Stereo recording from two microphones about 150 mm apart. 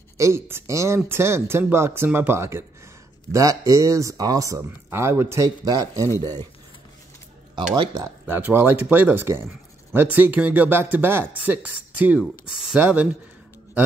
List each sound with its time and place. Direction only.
0.2 s speech: 15° right (ahead or behind)
7.7 s speech: 25° right (ahead or behind); by 13.2 s 10° right (ahead or behind)